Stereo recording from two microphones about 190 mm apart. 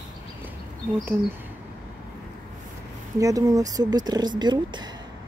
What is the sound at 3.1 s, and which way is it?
Speech, 15° right (ahead or behind).